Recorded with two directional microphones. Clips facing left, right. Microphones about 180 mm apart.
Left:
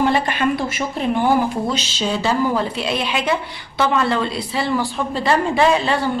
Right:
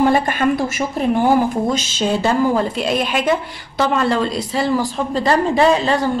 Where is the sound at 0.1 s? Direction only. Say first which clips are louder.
Right 3 dB; 45° right (ahead or behind).